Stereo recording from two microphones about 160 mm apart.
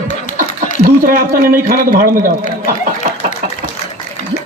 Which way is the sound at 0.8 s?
60° right (ahead or behind).